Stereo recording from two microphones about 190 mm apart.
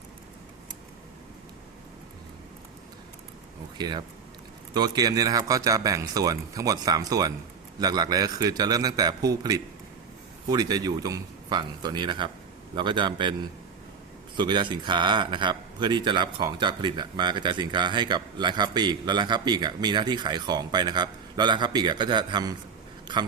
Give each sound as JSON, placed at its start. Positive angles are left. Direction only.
{"t": 3.8, "sound": "a man's voice", "side_deg": -20}
{"t": 14.3, "sound": "a man's voice", "side_deg": -25}